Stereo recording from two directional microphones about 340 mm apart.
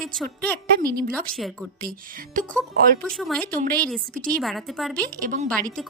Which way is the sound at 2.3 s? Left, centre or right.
Right.